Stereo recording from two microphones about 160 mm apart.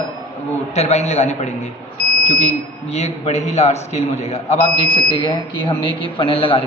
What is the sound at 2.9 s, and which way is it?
A man's voice, 40° left (ahead or behind).